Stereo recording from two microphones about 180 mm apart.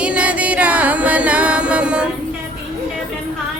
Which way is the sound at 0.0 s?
5° right (ahead or behind).